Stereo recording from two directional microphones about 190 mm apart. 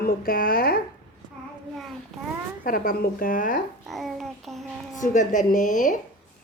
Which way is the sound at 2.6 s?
50° left (ahead or behind).